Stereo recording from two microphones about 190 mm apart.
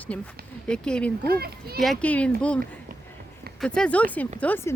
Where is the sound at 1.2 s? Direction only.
55° right (ahead or behind).